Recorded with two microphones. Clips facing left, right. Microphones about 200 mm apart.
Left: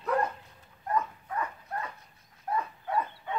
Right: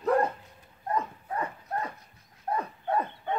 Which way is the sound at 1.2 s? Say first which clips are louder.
Right 2 dB; 30° right (ahead or behind).